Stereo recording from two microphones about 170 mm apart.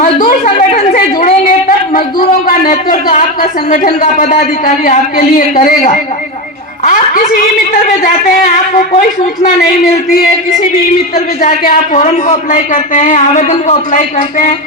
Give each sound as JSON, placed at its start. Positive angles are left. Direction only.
{"t": 0.0, "sound": "a sound", "side_deg": 50}
{"t": 0.9, "sound": "a man's voice", "side_deg": 55}
{"t": 9.6, "sound": "a man's voice", "side_deg": 65}
{"t": 11.4, "sound": "a man's voice", "side_deg": 50}